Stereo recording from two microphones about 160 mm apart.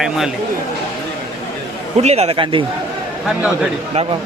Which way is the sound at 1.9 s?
40° right (ahead or behind).